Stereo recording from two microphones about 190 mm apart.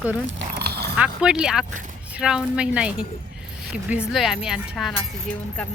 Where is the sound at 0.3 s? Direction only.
65° right (ahead or behind).